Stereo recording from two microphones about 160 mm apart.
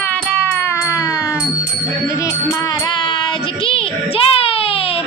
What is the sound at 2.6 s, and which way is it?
Child singing, 25° left (ahead or behind).